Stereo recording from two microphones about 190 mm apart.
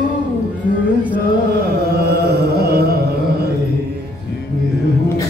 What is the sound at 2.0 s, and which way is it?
Carnatic music, 60° right (ahead or behind).